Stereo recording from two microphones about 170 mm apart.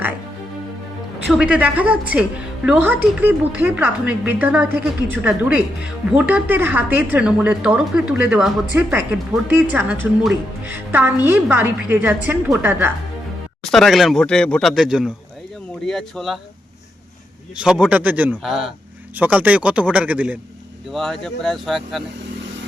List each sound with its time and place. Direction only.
1.3 s a woman's voice: 5° right (ahead or behind)
13.7 s speech: centre (ahead or behind)
17.6 s a woman's voice: 5° right (ahead or behind)
20.9 s speech: centre (ahead or behind)